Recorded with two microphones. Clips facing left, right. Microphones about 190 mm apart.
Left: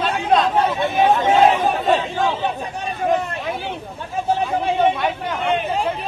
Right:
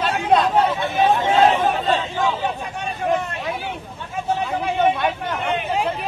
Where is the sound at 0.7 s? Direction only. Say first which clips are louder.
Left 2 dB; 25° left (ahead or behind).